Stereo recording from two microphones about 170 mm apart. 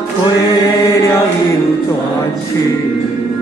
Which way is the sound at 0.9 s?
20° left (ahead or behind).